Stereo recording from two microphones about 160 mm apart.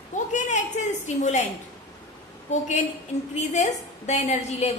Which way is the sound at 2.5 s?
45° left (ahead or behind).